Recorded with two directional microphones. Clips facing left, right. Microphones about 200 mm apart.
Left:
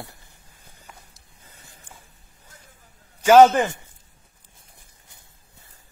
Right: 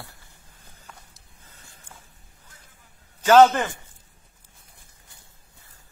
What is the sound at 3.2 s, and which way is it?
Speech, 10° left (ahead or behind).